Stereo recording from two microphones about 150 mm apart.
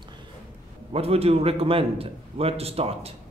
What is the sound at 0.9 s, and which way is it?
A man's voice, 40° right (ahead or behind).